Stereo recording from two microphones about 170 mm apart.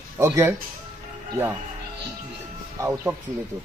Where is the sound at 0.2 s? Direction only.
15° right (ahead or behind).